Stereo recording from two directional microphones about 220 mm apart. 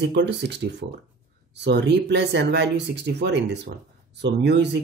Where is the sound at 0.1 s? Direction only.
50° right (ahead or behind).